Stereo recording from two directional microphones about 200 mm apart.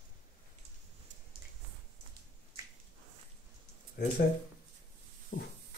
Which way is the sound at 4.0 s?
55° left (ahead or behind).